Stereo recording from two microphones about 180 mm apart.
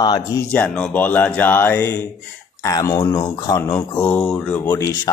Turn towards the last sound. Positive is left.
turn(degrees=20)  # may be behind; listen again after turning